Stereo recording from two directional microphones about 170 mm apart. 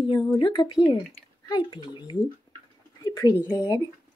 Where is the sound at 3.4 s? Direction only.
20° left (ahead or behind).